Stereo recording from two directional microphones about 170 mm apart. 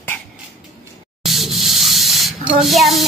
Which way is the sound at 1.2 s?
Centre (ahead or behind).